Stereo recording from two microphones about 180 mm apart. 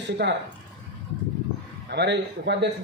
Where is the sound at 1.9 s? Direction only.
70° right (ahead or behind).